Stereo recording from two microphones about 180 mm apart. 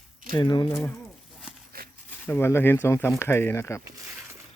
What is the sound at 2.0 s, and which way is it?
Speech, 10° left (ahead or behind).